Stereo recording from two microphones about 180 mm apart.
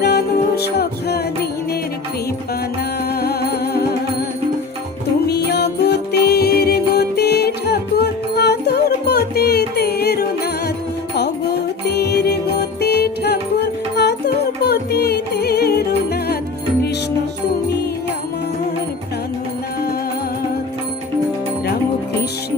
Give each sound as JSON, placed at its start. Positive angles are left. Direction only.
{"t": 0.0, "sound": "music", "side_deg": 65}
{"t": 3.2, "sound": "music", "side_deg": 60}
{"t": 5.2, "sound": "music", "side_deg": 65}
{"t": 11.9, "sound": "music", "side_deg": 65}